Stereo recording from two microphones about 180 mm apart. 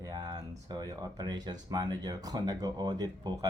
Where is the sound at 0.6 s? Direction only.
20° right (ahead or behind).